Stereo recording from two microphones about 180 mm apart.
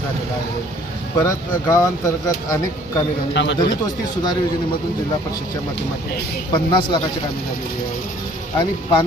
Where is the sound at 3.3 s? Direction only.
75° left (ahead or behind).